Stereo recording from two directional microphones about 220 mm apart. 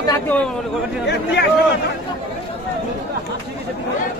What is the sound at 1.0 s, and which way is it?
Speech, 50° left (ahead or behind).